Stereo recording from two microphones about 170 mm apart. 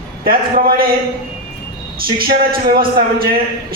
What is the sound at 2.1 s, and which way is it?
A man's voice, 60° right (ahead or behind).